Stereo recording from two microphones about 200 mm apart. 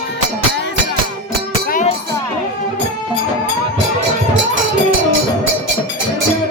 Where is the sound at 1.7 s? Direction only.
40° left (ahead or behind).